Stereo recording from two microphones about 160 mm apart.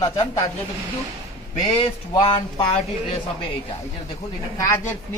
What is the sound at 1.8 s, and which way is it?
Speech, 30° left (ahead or behind).